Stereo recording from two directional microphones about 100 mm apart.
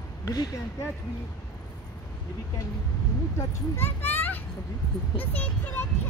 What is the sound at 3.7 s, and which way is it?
A child's voice, 20° left (ahead or behind).